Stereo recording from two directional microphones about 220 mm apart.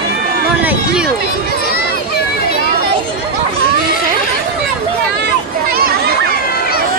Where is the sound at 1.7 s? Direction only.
45° left (ahead or behind).